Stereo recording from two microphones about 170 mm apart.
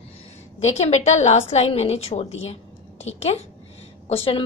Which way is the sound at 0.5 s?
40° left (ahead or behind).